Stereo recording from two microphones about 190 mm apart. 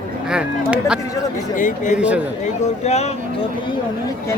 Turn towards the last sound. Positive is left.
turn(degrees=35)  # may be behind; listen again after turning